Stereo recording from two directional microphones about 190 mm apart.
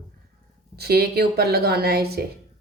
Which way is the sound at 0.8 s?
55° right (ahead or behind).